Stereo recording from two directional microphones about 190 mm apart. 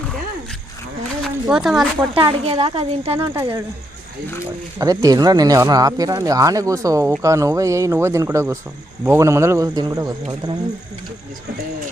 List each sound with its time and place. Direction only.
1.2 s a sound: centre (ahead or behind)
2.1 s speech: 30° right (ahead or behind)
4.8 s speech: 20° right (ahead or behind)